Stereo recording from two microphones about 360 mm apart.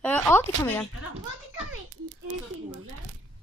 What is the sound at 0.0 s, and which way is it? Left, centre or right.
Speech, centre.